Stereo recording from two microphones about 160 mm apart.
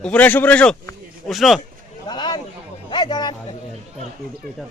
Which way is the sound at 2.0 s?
25° left (ahead or behind).